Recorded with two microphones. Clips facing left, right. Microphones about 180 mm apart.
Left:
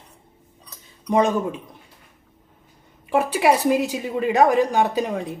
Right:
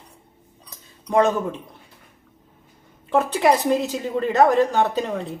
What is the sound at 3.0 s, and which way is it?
Speech, 10° left (ahead or behind).